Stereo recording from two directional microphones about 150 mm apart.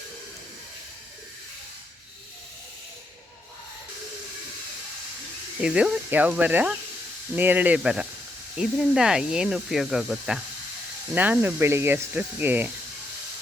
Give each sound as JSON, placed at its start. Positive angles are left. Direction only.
{"t": 5.5, "sound": "speech", "side_deg": -5}